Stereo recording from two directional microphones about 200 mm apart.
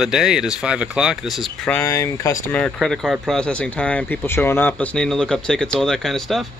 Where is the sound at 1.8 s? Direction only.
15° left (ahead or behind).